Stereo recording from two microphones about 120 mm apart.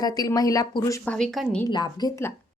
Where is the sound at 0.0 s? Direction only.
35° left (ahead or behind).